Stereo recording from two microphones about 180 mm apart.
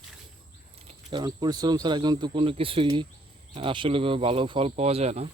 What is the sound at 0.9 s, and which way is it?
Speech, 25° right (ahead or behind).